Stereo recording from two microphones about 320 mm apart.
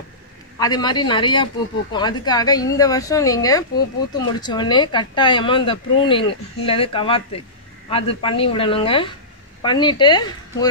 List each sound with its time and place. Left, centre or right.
0.6 s speech: centre